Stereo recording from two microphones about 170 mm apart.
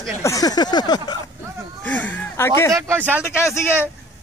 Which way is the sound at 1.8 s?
10° left (ahead or behind).